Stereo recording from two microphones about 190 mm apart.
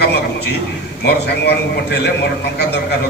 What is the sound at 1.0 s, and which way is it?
A man's voice, 60° left (ahead or behind).